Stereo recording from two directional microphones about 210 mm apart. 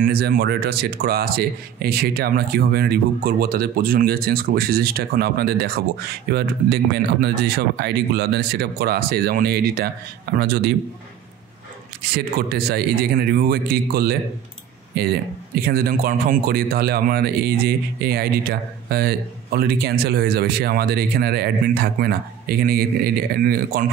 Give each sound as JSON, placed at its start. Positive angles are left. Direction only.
{"t": 0.0, "sound": "speech", "side_deg": -45}
{"t": 12.0, "sound": "speech", "side_deg": -50}